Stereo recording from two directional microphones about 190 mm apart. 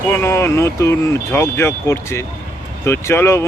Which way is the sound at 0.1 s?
15° left (ahead or behind).